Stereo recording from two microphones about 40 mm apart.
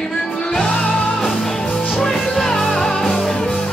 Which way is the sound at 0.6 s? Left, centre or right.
Centre.